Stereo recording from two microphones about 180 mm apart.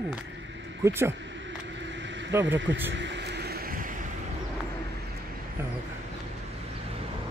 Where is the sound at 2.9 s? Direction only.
80° right; by 4.0 s 50° right (ahead or behind).